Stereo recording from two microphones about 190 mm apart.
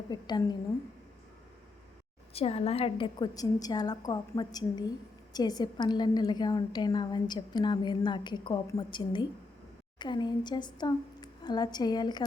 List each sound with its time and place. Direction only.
0.1 s a woman's voice: 20° left (ahead or behind)
2.3 s a woman's voice: 30° left (ahead or behind)